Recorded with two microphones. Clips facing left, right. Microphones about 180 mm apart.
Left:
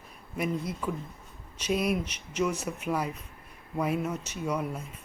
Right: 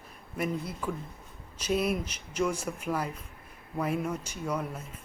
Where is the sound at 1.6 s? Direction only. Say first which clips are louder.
Even; 30° right (ahead or behind).